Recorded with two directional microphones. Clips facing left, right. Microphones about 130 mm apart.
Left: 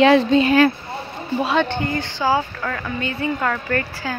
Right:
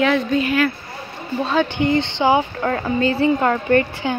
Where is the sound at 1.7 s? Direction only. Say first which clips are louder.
Right 5 dB; 20° right (ahead or behind).